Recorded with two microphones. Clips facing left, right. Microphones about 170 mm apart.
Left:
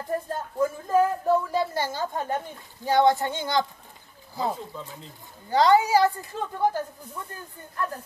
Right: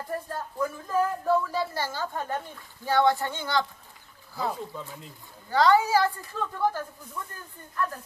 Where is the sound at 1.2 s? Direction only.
20° left (ahead or behind).